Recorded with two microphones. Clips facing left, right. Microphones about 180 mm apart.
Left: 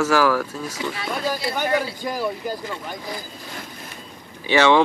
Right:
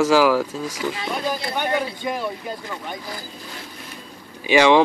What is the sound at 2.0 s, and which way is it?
Speech, centre (ahead or behind).